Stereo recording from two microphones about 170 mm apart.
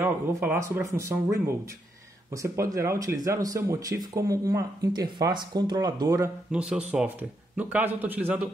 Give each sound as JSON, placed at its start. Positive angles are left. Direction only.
{"t": 0.0, "sound": "a man's voice", "side_deg": -15}
{"t": 6.5, "sound": "a man's voice", "side_deg": -5}